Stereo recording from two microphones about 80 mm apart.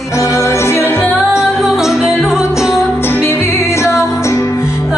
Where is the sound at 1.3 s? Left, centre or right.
Centre.